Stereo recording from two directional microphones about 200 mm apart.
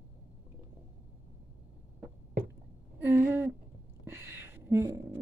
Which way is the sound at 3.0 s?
15° right (ahead or behind).